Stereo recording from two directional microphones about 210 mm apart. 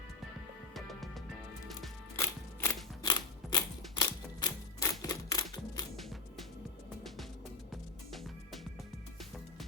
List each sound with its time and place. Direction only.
0.7 s music: centre (ahead or behind)
2.1 s music: 10° left (ahead or behind)
3.0 s typewriter: 20° left (ahead or behind)
6.0 s music: centre (ahead or behind)
7.7 s music: centre (ahead or behind)